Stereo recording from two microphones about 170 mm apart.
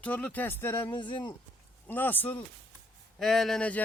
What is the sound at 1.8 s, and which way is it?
Speech, 10° left (ahead or behind).